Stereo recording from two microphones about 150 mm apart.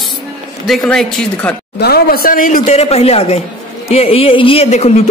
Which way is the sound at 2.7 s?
45° left (ahead or behind).